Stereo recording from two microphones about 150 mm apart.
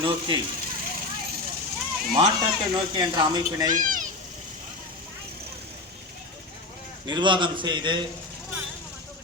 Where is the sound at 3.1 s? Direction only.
25° right (ahead or behind).